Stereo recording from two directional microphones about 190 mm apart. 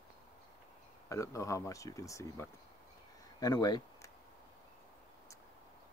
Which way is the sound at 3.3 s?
20° left (ahead or behind).